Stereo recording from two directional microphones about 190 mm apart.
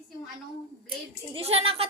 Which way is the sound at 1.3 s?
30° right (ahead or behind).